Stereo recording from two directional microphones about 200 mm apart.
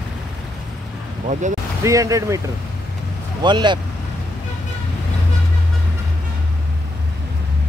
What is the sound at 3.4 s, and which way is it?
Speech, 25° right (ahead or behind).